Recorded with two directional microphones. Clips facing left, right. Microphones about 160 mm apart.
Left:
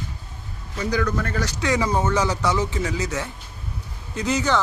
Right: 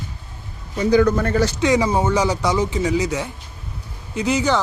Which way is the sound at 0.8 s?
25° right (ahead or behind).